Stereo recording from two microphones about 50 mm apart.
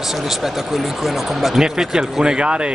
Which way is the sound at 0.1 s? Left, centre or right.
Centre.